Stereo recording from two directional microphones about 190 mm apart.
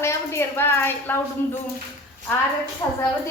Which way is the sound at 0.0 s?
15° left (ahead or behind).